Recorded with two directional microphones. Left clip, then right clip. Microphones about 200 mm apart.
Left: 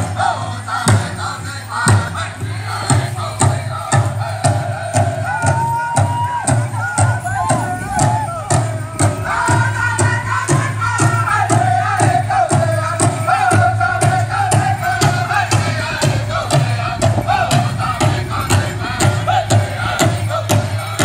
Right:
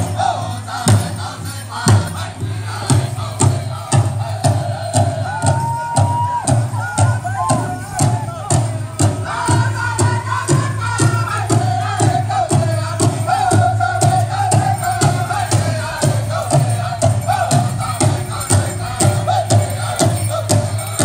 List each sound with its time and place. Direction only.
0.2 s music: 25° right (ahead or behind)
3.9 s music: 15° right (ahead or behind)